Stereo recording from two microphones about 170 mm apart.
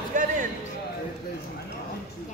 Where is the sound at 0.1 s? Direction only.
50° right (ahead or behind).